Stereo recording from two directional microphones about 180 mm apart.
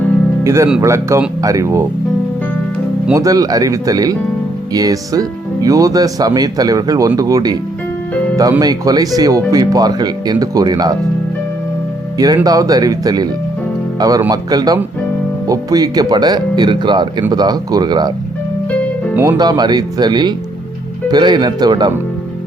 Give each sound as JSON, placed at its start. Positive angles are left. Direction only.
{"t": 0.4, "sound": "speech", "side_deg": -15}
{"t": 3.1, "sound": "speech", "side_deg": -20}
{"t": 12.1, "sound": "speech", "side_deg": -20}
{"t": 19.1, "sound": "speech", "side_deg": -10}
{"t": 19.4, "sound": "speech", "side_deg": -25}